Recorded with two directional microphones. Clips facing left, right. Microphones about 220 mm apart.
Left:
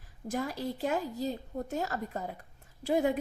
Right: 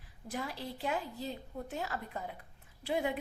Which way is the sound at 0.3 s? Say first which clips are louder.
Left 6 dB; 45° left (ahead or behind).